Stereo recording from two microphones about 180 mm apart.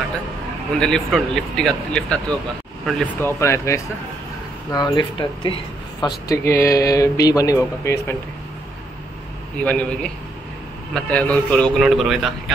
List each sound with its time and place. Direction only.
0.7 s a man's voice: 5° left (ahead or behind)
9.6 s a man's voice: 10° left (ahead or behind)